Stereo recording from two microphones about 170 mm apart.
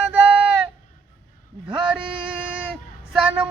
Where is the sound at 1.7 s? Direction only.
5° right (ahead or behind).